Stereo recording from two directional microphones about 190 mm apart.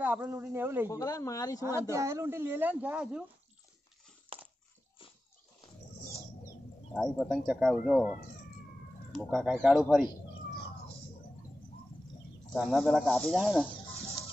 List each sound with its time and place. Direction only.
0.0 s speech: 10° right (ahead or behind)
0.8 s speech: 15° left (ahead or behind)
1.8 s speech: 15° right (ahead or behind)
4.3 s crushing: 30° right (ahead or behind)
6.9 s speech: centre (ahead or behind)
9.4 s speech: 5° right (ahead or behind)
12.5 s speech: centre (ahead or behind)